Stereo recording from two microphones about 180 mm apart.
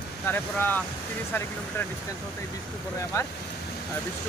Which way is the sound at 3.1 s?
15° left (ahead or behind).